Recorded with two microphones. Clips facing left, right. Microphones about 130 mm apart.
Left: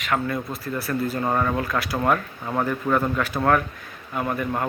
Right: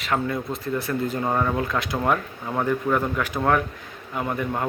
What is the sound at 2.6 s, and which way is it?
Speech, 10° right (ahead or behind).